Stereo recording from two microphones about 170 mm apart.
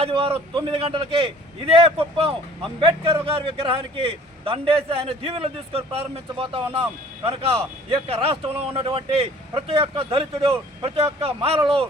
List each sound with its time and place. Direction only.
0.0 s a man's voice: 35° right (ahead or behind)